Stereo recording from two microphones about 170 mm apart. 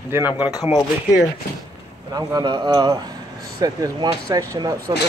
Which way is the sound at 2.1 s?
25° right (ahead or behind).